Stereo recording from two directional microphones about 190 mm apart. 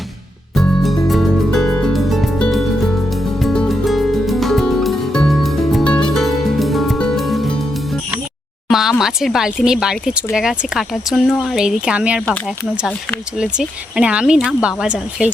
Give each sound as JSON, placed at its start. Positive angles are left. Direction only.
{"t": 0.5, "sound": "music", "side_deg": 0}
{"t": 8.7, "sound": "speech", "side_deg": 0}